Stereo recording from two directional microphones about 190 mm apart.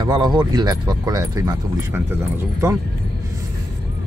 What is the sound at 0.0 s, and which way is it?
Speech, 25° right (ahead or behind).